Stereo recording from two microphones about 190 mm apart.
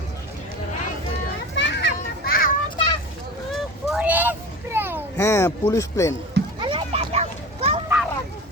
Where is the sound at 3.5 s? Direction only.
5° right (ahead or behind).